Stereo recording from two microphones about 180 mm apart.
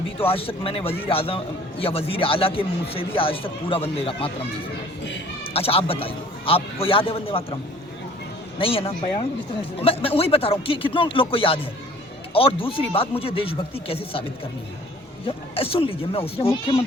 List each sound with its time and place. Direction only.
0.2 s speech: 30° left (ahead or behind)
5.4 s a man's voice: 30° left (ahead or behind)
8.5 s speech: 30° left (ahead or behind)
15.3 s speech: 30° left (ahead or behind)